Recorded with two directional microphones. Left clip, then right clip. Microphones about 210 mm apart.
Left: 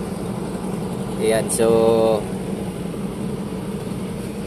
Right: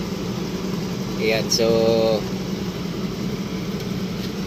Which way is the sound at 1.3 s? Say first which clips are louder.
Left 2 dB; 5° left (ahead or behind).